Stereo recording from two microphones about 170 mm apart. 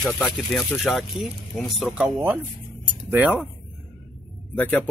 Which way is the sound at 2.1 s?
10° right (ahead or behind).